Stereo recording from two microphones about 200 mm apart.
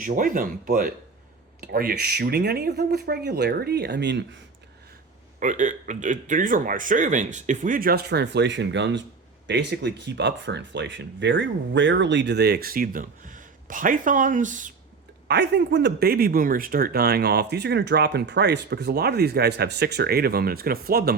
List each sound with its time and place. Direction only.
0.0 s speech: 45° right (ahead or behind); by 4.4 s 60° right (ahead or behind)
5.4 s speech: 40° right (ahead or behind)
15.3 s speech: 60° right (ahead or behind)